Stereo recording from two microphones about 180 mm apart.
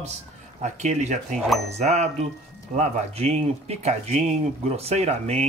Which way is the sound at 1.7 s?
40° right (ahead or behind).